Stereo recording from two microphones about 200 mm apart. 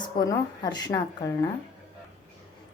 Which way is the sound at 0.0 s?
20° left (ahead or behind).